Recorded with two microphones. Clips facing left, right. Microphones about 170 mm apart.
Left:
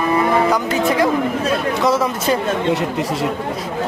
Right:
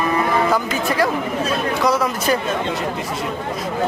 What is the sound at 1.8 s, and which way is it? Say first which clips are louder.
Speech: left 1 dB; centre (ahead or behind).